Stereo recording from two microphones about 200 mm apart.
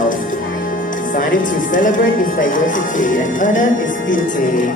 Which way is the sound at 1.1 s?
40° left (ahead or behind).